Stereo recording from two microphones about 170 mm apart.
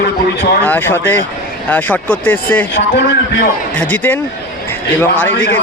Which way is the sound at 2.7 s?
90° left.